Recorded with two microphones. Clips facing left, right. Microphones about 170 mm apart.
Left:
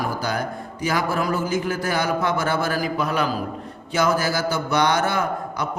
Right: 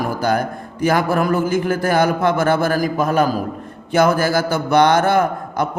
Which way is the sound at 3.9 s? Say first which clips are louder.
Right 6 dB; 55° right (ahead or behind).